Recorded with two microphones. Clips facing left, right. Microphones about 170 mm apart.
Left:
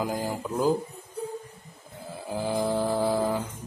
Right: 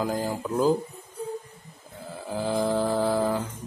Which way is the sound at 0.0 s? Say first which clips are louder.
Right 2 dB; 15° left (ahead or behind).